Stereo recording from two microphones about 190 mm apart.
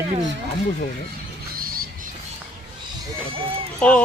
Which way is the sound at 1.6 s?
50° right (ahead or behind).